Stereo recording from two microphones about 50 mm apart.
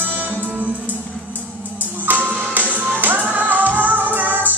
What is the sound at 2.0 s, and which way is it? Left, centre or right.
Music, right.